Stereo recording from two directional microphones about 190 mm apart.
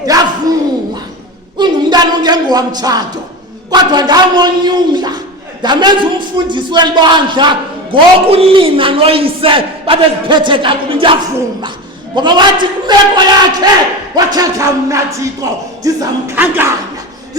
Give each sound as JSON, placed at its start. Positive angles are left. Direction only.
{"t": 1.5, "sound": "a woman's voice", "side_deg": -25}